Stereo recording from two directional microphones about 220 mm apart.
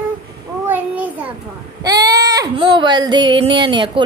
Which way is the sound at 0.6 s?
5° right (ahead or behind).